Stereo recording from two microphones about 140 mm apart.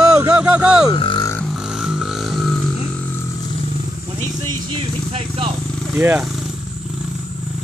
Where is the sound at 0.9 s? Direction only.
35° left (ahead or behind).